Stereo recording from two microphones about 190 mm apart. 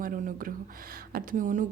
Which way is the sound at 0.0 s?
45° right (ahead or behind).